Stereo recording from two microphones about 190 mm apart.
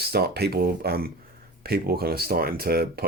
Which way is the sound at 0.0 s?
55° right (ahead or behind).